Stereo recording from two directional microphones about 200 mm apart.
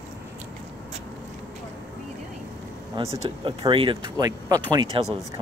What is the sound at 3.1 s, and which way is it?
Speech, 25° right (ahead or behind).